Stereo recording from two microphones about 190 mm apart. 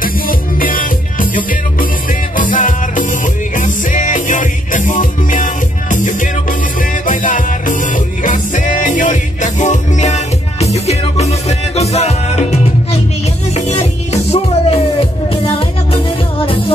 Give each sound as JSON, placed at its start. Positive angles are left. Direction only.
{"t": 0.0, "sound": "music", "side_deg": 45}
{"t": 2.3, "sound": "music", "side_deg": 45}
{"t": 13.7, "sound": "music", "side_deg": 35}